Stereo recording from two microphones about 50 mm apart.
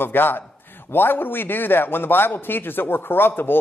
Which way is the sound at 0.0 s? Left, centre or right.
Left.